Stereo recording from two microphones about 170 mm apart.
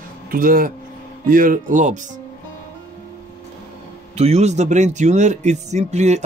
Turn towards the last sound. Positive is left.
turn(degrees=-40)  # may be behind; listen again after turning